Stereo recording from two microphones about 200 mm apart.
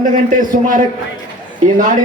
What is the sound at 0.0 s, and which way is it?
Speech, 40° right (ahead or behind).